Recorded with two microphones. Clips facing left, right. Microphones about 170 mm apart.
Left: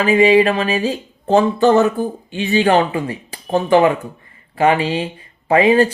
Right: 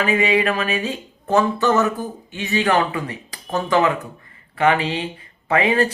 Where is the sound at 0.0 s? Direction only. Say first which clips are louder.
Left 7 dB; 30° left (ahead or behind).